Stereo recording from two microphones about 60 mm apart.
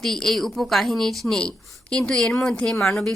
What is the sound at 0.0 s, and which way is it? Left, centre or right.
A woman's voice, centre.